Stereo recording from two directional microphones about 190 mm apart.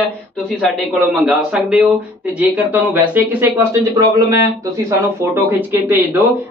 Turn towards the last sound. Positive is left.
turn(degrees=-10)  # may be behind; listen again after turning